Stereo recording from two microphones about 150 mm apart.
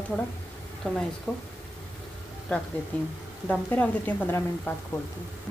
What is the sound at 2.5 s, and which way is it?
Speech, 10° left (ahead or behind).